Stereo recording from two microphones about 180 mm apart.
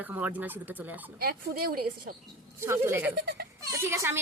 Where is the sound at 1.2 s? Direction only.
55° right (ahead or behind).